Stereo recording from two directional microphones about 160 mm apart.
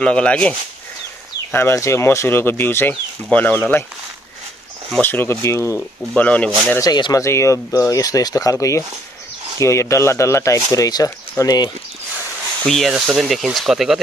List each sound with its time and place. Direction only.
0.0 s speech: 5° left (ahead or behind)
5.0 s speech: 15° left (ahead or behind)
6.8 s speech: 25° left (ahead or behind)
12.6 s speech: centre (ahead or behind)